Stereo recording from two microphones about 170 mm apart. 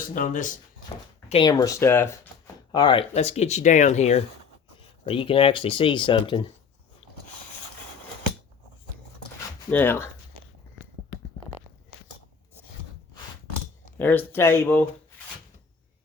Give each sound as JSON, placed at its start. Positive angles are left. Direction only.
{"t": 0.1, "sound": "speech", "side_deg": 50}
{"t": 1.3, "sound": "speech", "side_deg": 25}
{"t": 2.7, "sound": "speech", "side_deg": 30}
{"t": 3.2, "sound": "speech", "side_deg": 40}
{"t": 4.8, "sound": "speech", "side_deg": 30}
{"t": 9.6, "sound": "speech", "side_deg": 10}
{"t": 14.0, "sound": "speech", "side_deg": 10}